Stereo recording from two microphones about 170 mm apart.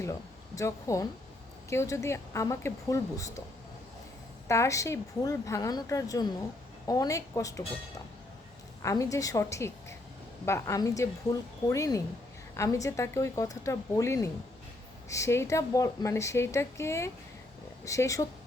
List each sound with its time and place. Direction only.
0.0 s a woman's voice: 20° left (ahead or behind)
4.4 s a woman's voice: 15° left (ahead or behind)
8.8 s a woman's voice: 20° left (ahead or behind)